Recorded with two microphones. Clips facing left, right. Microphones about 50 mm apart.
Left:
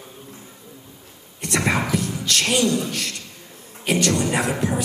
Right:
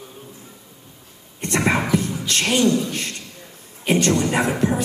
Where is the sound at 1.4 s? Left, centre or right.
Right.